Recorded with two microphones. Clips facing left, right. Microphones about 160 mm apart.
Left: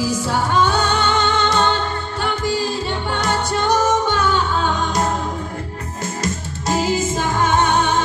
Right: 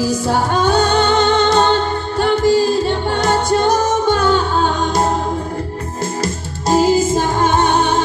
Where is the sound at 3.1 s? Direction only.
35° right (ahead or behind).